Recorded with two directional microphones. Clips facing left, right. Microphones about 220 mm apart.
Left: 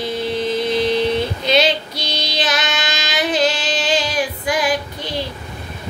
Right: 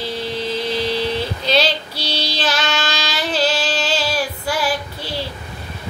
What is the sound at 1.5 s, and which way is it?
Child singing, 15° left (ahead or behind).